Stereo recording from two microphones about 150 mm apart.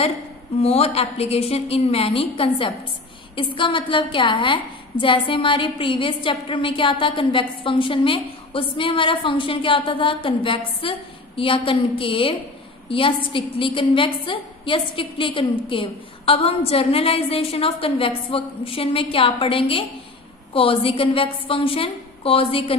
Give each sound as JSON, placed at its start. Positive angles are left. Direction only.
{"t": 0.6, "sound": "a woman's voice", "side_deg": 45}